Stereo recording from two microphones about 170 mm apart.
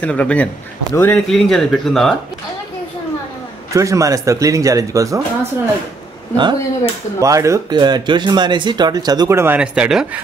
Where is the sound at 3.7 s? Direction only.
20° right (ahead or behind).